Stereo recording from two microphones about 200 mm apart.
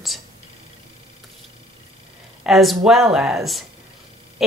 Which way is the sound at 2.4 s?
Centre (ahead or behind).